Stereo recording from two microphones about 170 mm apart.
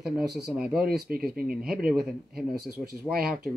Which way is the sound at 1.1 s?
60° right (ahead or behind).